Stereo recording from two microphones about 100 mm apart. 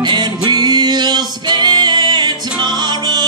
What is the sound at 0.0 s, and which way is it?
Music, 45° right (ahead or behind).